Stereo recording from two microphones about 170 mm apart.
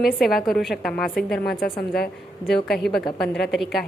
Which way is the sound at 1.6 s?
65° left (ahead or behind).